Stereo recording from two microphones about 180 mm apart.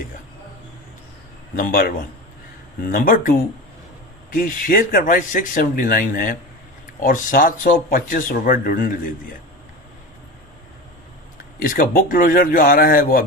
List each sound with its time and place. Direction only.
1.5 s speech: 50° left (ahead or behind)
11.6 s speech: 50° left (ahead or behind)